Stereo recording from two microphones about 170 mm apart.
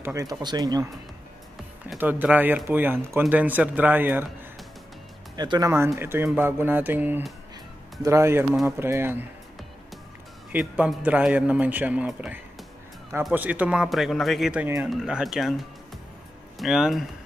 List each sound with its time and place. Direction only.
0.0 s speech: 20° right (ahead or behind)
2.0 s speech: 10° right (ahead or behind)
5.3 s speech: 25° right (ahead or behind)
10.5 s speech: 5° right (ahead or behind)